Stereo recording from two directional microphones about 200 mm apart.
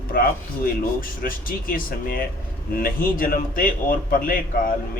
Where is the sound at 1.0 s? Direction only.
45° left (ahead or behind).